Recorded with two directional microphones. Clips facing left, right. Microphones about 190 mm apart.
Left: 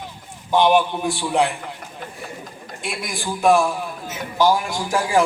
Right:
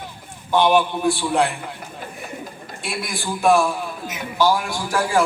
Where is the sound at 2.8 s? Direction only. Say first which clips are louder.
Even; 15° left (ahead or behind).